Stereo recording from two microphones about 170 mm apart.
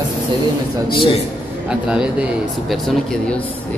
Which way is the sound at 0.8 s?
30° left (ahead or behind).